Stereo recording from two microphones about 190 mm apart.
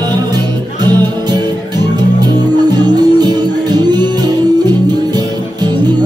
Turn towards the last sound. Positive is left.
turn(degrees=-20)  # may be behind; listen again after turning